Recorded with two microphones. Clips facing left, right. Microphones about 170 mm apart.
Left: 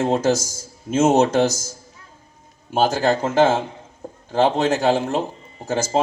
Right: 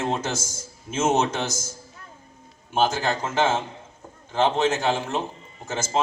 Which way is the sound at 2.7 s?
40° left (ahead or behind).